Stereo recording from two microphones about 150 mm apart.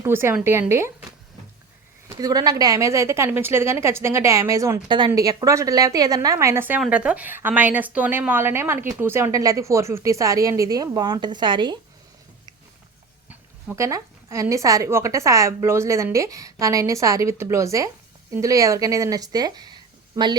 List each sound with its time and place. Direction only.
0.0 s a woman's voice: 15° right (ahead or behind)
2.0 s a woman's voice: 25° right (ahead or behind)
4.9 s a woman's voice: 30° right (ahead or behind)
13.2 s a woman's voice: 15° right (ahead or behind)